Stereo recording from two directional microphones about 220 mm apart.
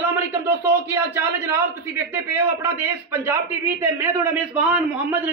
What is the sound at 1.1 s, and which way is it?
A man's voice, 10° right (ahead or behind).